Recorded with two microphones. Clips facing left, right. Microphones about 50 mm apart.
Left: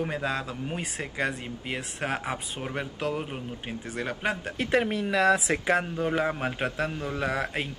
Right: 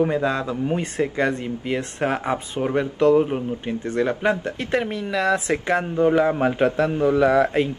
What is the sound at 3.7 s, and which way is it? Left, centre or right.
Speech, centre.